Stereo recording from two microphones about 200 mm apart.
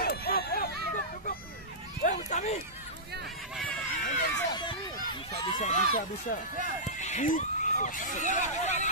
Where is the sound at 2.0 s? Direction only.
35° left (ahead or behind).